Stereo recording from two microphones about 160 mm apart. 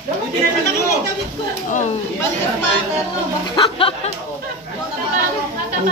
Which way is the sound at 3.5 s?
35° left (ahead or behind).